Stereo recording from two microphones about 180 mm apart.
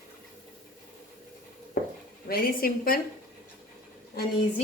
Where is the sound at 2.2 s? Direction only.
55° left (ahead or behind).